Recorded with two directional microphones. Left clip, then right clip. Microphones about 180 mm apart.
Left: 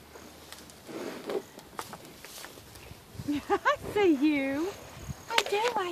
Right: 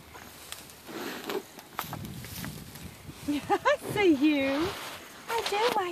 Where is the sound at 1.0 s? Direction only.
40° right (ahead or behind).